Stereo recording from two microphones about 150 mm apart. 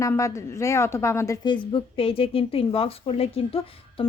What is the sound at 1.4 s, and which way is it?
Speech, 30° left (ahead or behind).